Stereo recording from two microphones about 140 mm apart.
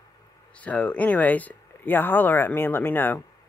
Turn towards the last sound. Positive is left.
turn(degrees=15)  # may be behind; listen again after turning